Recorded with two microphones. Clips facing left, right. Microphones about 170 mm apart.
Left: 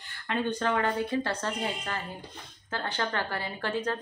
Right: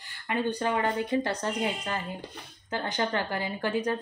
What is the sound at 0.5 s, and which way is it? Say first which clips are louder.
Speech: even; 15° right (ahead or behind).